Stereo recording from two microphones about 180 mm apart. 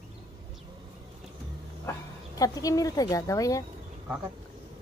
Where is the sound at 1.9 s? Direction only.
20° left (ahead or behind).